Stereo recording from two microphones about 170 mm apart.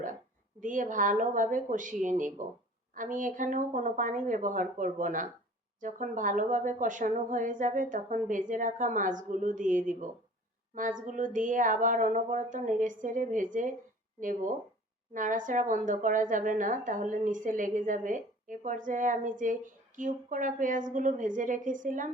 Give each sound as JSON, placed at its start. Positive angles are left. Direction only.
{"t": 0.6, "sound": "a woman's voice", "side_deg": -50}